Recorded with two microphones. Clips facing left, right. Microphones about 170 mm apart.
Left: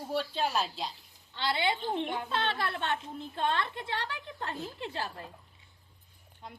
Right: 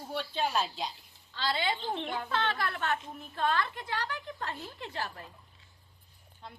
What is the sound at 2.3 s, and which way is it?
A woman's voice, 25° left (ahead or behind).